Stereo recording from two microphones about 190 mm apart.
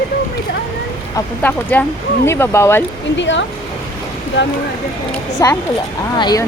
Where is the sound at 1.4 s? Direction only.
10° left (ahead or behind).